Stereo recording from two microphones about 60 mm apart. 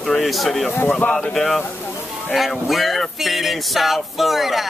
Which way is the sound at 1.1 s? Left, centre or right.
Centre.